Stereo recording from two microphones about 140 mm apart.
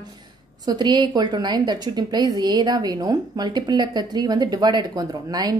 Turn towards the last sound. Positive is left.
turn(degrees=-30)  # may be behind; listen again after turning